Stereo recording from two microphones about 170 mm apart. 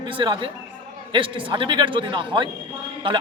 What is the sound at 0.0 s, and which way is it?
A man's voice, 30° right (ahead or behind).